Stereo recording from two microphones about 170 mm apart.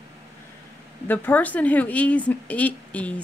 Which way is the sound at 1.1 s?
10° left (ahead or behind).